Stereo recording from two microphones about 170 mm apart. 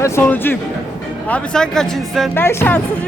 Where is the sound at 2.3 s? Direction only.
15° left (ahead or behind).